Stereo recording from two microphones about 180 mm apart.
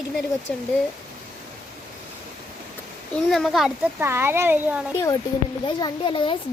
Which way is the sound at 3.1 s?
Centre (ahead or behind).